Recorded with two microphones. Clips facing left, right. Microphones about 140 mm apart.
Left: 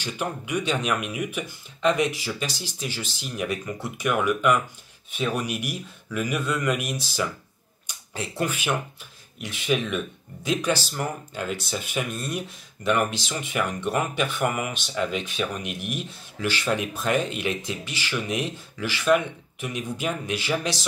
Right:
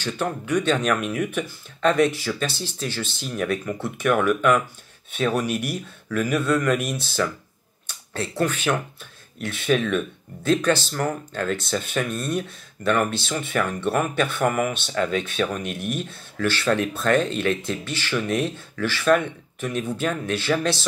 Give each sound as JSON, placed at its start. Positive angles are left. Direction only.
{"t": 0.0, "sound": "speech", "side_deg": 10}
{"t": 7.8, "sound": "a sound", "side_deg": 15}
{"t": 9.4, "sound": "speech", "side_deg": 15}